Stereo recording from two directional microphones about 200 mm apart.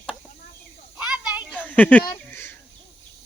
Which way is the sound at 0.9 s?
5° right (ahead or behind).